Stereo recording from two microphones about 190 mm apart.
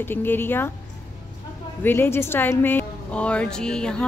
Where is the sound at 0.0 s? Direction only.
10° left (ahead or behind).